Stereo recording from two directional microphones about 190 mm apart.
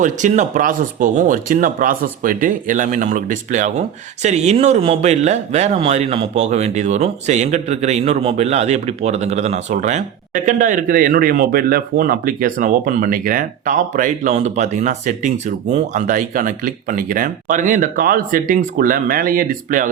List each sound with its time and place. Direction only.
0.0 s speech: 40° right (ahead or behind)